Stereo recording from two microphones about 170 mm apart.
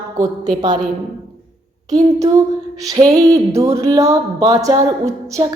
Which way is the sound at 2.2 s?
20° right (ahead or behind).